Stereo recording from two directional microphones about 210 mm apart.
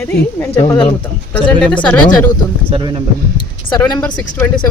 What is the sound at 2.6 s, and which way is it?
Speech, 25° right (ahead or behind).